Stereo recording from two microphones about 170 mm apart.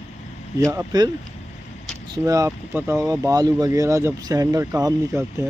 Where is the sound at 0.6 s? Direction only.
15° right (ahead or behind).